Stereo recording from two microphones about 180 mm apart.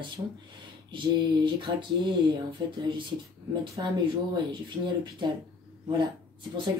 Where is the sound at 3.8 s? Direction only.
25° right (ahead or behind).